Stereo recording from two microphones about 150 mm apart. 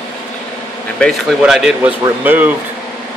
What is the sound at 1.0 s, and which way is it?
A man's voice, centre (ahead or behind).